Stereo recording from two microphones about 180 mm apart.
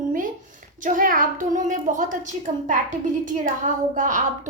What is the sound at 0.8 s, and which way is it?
A woman's voice, 50° right (ahead or behind).